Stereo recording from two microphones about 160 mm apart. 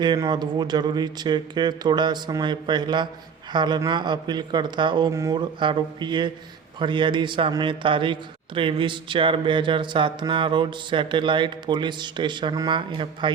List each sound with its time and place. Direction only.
0.0 s a man's voice: 25° right (ahead or behind)